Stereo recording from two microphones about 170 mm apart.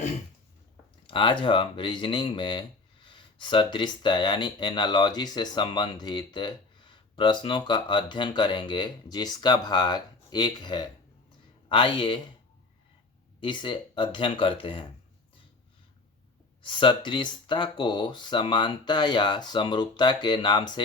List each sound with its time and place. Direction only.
1.0 s speech: 30° left (ahead or behind)
13.4 s speech: 30° left (ahead or behind)
16.6 s speech: 30° left (ahead or behind)